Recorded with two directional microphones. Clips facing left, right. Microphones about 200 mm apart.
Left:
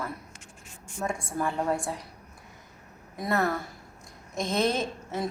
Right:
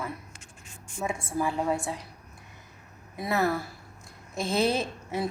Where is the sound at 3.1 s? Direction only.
5° right (ahead or behind).